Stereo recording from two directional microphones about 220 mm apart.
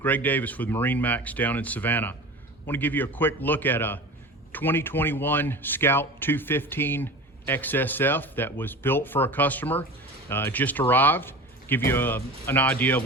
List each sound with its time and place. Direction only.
0.0 s speech: 10° left (ahead or behind)